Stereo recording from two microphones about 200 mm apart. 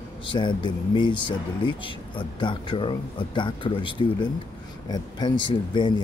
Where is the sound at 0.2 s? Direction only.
25° left (ahead or behind).